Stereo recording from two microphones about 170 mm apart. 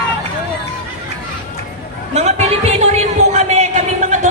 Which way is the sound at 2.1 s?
40° right (ahead or behind).